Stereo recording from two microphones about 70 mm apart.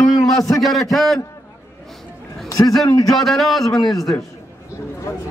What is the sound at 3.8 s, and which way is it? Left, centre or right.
Speech, left.